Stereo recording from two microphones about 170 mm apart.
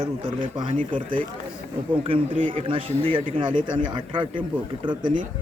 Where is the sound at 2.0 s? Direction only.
30° right (ahead or behind).